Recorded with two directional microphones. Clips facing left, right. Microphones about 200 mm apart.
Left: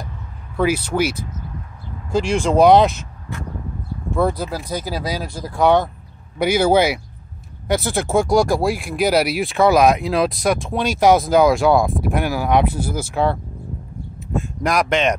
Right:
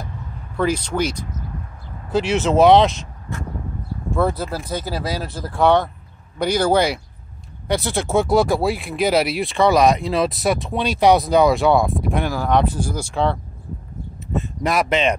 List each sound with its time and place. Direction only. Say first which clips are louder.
0.6 s speech: left 2 dB; 5° left (ahead or behind)
2.1 s speech: even; 5° right (ahead or behind)
4.2 s speech: left 1 dB; 5° right (ahead or behind)
4.6 s speech: even; 10° left (ahead or behind)
5.5 s speech: left 1 dB; centre (ahead or behind)